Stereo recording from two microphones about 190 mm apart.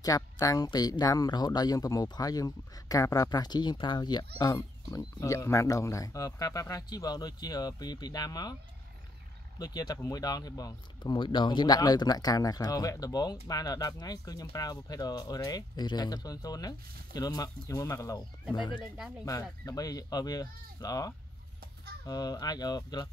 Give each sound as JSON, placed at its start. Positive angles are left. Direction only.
{"t": 0.0, "sound": "speech", "side_deg": 20}
{"t": 9.6, "sound": "speech", "side_deg": 20}